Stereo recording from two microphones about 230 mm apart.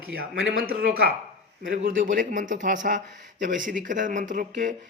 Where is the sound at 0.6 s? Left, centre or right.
Right.